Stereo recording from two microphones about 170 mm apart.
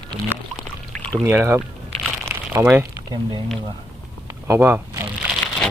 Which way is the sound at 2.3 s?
15° right (ahead or behind).